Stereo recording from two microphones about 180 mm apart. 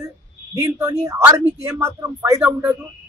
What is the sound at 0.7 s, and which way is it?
A man's voice, 15° right (ahead or behind).